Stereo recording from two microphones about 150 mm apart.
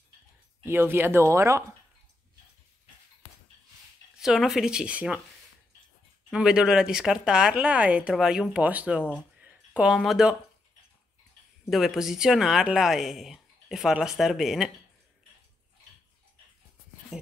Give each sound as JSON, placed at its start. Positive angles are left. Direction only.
{"t": 0.7, "sound": "speech", "side_deg": -15}
{"t": 4.2, "sound": "speech", "side_deg": 0}
{"t": 6.3, "sound": "speech", "side_deg": -5}
{"t": 9.4, "sound": "a sound", "side_deg": -10}
{"t": 9.9, "sound": "speech", "side_deg": 0}
{"t": 11.7, "sound": "speech", "side_deg": 0}
{"t": 17.1, "sound": "a sound", "side_deg": -5}